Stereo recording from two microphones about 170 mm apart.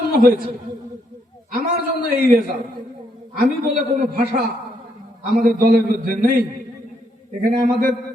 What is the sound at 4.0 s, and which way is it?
A man's voice, 55° right (ahead or behind).